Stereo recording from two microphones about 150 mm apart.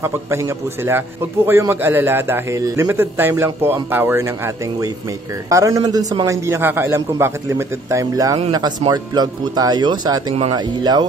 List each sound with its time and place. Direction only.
0.0 s a man's voice: 15° right (ahead or behind)
5.5 s a man's voice: 20° right (ahead or behind)